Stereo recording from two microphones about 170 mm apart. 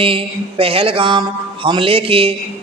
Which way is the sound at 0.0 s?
30° right (ahead or behind).